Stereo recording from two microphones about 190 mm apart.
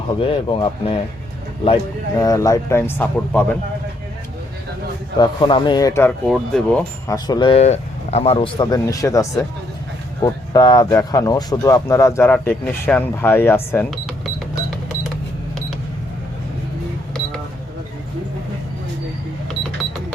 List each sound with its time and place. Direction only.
0.2 s speech: 25° left (ahead or behind); by 3.6 s 10° left (ahead or behind)
5.2 s speech: 25° left (ahead or behind)
6.2 s speech: centre (ahead or behind)
7.1 s speech: 20° left (ahead or behind)
13.9 s cash register: centre (ahead or behind)